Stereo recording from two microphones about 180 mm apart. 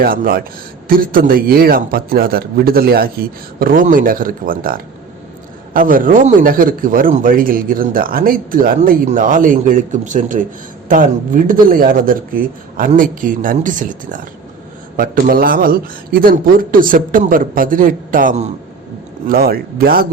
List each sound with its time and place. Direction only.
0.0 s a man's voice: 55° right (ahead or behind)
19.3 s speech: 55° right (ahead or behind)